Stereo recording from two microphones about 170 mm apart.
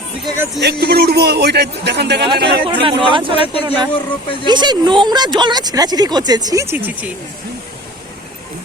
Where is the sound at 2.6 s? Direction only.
30° right (ahead or behind); by 7.1 s 10° right (ahead or behind).